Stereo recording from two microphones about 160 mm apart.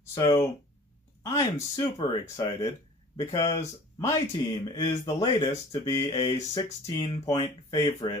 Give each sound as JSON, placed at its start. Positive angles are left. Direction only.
{"t": 0.0, "sound": "speech", "side_deg": 20}